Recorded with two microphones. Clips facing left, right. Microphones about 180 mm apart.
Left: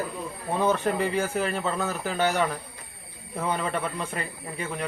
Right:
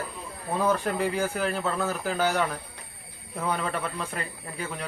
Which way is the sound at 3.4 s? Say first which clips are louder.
Left 1 dB; centre (ahead or behind).